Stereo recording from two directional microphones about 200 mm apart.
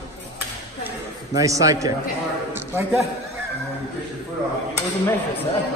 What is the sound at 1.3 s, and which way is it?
Speech, 15° right (ahead or behind).